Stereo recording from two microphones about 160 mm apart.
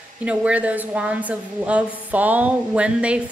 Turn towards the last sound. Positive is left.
turn(degrees=-5)  # may be behind; listen again after turning